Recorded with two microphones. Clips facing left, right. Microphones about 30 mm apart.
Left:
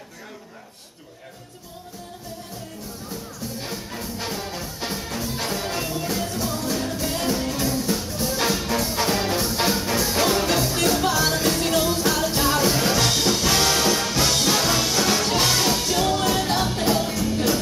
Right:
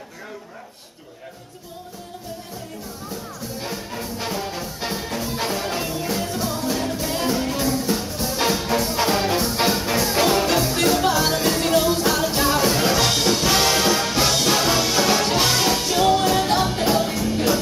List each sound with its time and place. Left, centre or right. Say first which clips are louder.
3.6 s music: right 2 dB; centre